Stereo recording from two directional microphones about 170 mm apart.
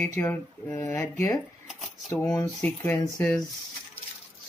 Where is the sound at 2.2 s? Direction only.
10° left (ahead or behind).